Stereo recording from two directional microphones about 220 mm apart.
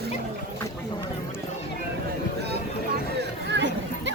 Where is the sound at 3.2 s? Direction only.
55° right (ahead or behind).